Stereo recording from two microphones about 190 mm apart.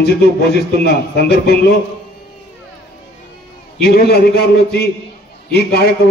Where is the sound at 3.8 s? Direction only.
55° left (ahead or behind).